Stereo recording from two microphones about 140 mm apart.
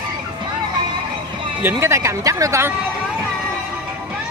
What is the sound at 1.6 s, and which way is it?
Speech, 20° right (ahead or behind).